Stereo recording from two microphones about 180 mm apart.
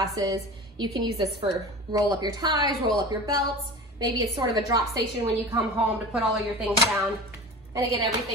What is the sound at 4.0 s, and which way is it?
Speech, 20° right (ahead or behind).